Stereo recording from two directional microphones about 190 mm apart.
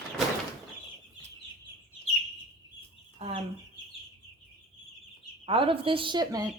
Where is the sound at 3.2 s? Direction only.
30° right (ahead or behind).